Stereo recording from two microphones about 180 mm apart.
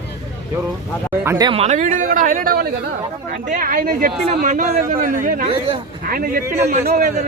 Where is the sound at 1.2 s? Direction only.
20° right (ahead or behind).